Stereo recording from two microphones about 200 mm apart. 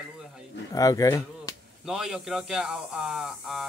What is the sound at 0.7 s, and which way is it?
Speech, 15° left (ahead or behind).